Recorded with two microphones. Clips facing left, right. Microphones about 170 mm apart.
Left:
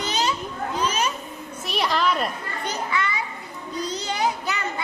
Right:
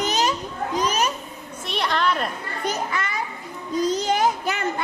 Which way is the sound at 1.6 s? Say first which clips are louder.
Even; centre (ahead or behind).